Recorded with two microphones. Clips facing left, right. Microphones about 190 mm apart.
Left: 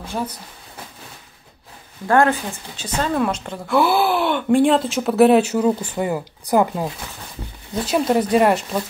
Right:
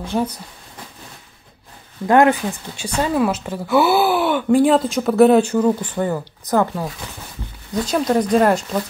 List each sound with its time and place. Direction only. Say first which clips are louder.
2.0 s a woman's voice: right 3 dB; 15° right (ahead or behind); by 8.5 s 5° left (ahead or behind)